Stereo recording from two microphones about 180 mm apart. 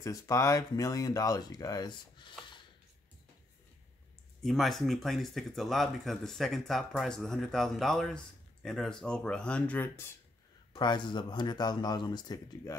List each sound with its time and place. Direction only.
0.0 s speech: 20° left (ahead or behind)
4.4 s speech: centre (ahead or behind)
10.7 s speech: 25° left (ahead or behind)